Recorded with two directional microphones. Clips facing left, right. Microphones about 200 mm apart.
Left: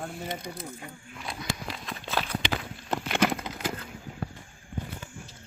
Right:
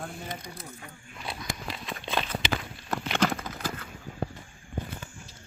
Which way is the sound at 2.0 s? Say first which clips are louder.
Even; 5° left (ahead or behind).